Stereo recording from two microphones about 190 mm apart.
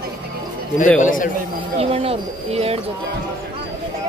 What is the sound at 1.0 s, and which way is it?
Speech, 45° left (ahead or behind).